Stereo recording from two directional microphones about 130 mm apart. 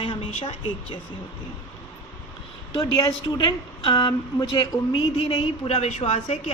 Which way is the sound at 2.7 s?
30° left (ahead or behind).